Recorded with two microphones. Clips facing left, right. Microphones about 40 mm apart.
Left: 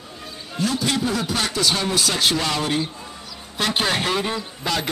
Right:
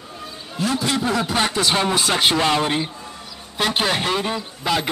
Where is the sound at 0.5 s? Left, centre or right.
Centre.